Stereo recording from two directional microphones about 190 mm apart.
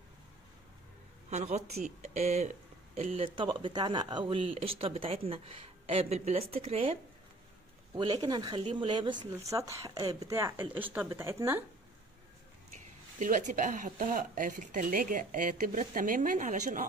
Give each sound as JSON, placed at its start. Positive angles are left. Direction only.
{"t": 1.3, "sound": "speech", "side_deg": -35}
{"t": 7.9, "sound": "speech", "side_deg": -20}
{"t": 12.7, "sound": "speech", "side_deg": -40}